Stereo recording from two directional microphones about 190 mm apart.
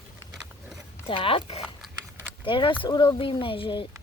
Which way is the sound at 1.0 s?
30° left (ahead or behind).